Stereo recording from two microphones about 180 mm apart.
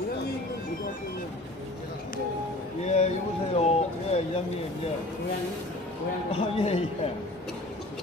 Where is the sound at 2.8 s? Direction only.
40° left (ahead or behind).